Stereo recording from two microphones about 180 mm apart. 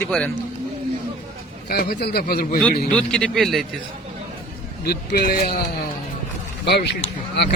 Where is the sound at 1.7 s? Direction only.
55° left (ahead or behind).